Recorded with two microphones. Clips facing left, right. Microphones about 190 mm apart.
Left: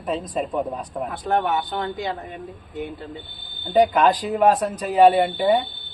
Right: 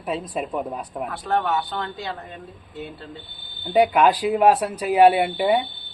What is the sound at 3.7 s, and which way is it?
Speech, 10° right (ahead or behind).